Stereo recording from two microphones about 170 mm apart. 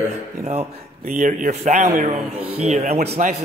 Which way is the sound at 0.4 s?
45° right (ahead or behind).